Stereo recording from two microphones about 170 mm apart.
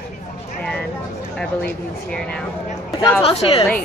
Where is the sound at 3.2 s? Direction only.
35° left (ahead or behind).